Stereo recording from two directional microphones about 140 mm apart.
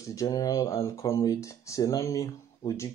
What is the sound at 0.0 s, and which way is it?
Speech, 25° left (ahead or behind).